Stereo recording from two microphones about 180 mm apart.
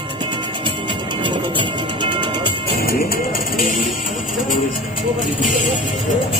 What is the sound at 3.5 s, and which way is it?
Speech, 50° left (ahead or behind).